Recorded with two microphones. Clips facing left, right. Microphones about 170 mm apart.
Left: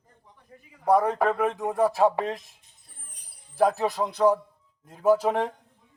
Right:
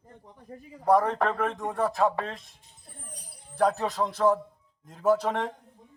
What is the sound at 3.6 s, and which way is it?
Speech, 10° left (ahead or behind).